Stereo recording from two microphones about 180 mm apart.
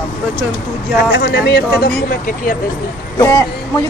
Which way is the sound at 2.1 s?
50° left (ahead or behind).